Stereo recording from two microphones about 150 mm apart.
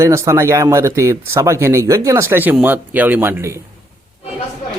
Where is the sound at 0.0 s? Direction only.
20° right (ahead or behind).